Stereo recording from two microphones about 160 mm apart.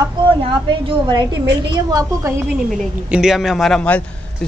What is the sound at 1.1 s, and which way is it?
A woman's voice, 25° right (ahead or behind).